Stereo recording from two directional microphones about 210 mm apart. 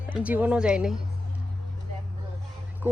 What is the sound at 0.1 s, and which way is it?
Speech, 5° right (ahead or behind).